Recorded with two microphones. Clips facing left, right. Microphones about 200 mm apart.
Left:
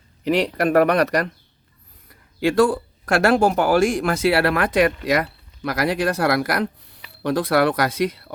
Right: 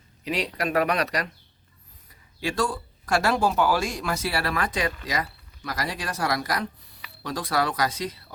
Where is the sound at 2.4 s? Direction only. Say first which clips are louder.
Left 10 dB; 55° left (ahead or behind).